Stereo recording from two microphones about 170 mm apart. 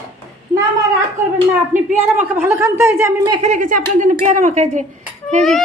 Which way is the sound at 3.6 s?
55° right (ahead or behind).